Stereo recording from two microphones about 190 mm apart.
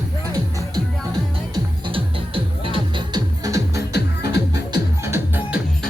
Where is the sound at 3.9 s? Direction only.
60° left (ahead or behind).